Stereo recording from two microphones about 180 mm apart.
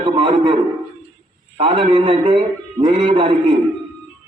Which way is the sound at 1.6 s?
30° right (ahead or behind).